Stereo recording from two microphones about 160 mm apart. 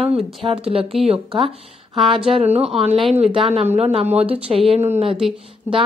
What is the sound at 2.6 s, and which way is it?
Speech, 40° right (ahead or behind).